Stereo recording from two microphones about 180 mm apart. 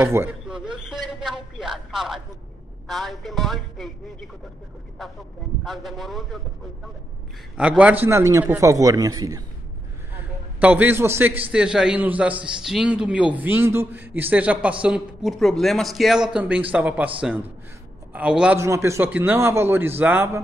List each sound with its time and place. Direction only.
0.0 s a sound: 10° right (ahead or behind)
2.9 s a man's voice: centre (ahead or behind)
5.6 s a man's voice: centre (ahead or behind)
7.5 s a man's voice: 5° right (ahead or behind)
10.6 s a man's voice: 10° right (ahead or behind)